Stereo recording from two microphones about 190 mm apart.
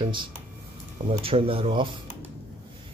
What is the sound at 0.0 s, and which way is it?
A man's voice, 25° right (ahead or behind).